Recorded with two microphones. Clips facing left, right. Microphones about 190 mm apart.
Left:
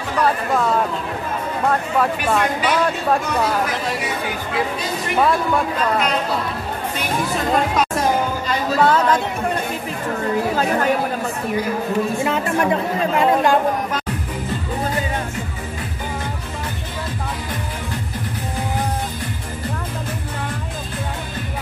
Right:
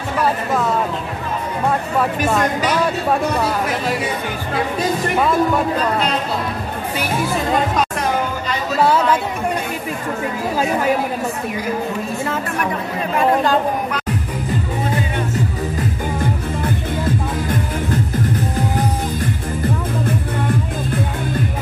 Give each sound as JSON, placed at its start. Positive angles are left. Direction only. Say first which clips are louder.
{"t": 8.8, "sound": "speech", "louder": "right 1 dB", "side_deg": -10}
{"t": 10.5, "sound": "speech", "louder": "right 4 dB", "side_deg": -10}
{"t": 12.3, "sound": "speech", "louder": "left 3 dB", "side_deg": 25}